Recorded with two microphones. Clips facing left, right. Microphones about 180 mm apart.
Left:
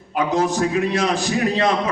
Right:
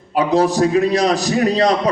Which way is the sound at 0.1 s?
35° right (ahead or behind).